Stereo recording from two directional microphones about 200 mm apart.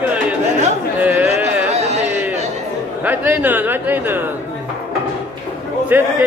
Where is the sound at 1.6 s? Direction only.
35° right (ahead or behind).